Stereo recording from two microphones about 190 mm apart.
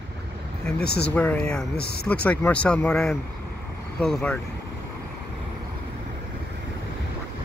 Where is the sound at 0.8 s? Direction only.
60° left (ahead or behind).